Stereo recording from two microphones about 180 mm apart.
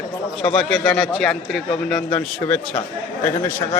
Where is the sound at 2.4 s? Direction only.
15° left (ahead or behind).